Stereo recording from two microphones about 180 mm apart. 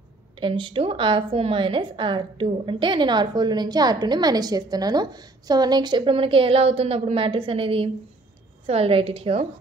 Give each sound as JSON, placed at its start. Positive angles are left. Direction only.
{"t": 0.4, "sound": "a woman's voice", "side_deg": -30}